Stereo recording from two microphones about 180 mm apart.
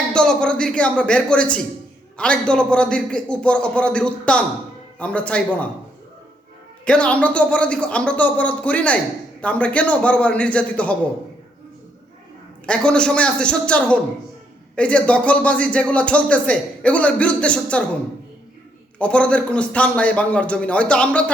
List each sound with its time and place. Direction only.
0.1 s a man's voice: 5° left (ahead or behind)
6.8 s speech: 5° left (ahead or behind)
12.6 s a man's voice: 5° left (ahead or behind)
18.9 s speech: 5° left (ahead or behind)